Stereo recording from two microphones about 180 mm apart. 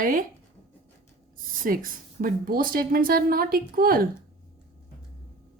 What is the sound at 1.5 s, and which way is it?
A woman's voice, 50° right (ahead or behind).